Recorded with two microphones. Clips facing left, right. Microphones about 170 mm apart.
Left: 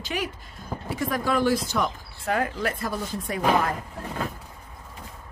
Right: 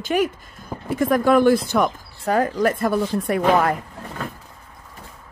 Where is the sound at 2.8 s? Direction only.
60° right (ahead or behind).